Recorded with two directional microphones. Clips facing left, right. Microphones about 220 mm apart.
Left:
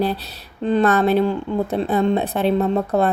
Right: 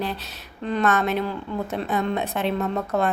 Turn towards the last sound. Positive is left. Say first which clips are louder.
# left 6 dB
turn(degrees=35)  # may be behind; listen again after turning